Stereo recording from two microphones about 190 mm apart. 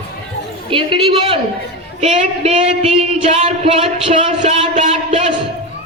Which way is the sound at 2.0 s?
35° right (ahead or behind).